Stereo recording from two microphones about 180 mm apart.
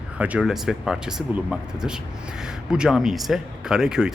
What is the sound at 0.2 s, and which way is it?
Speech, 5° right (ahead or behind).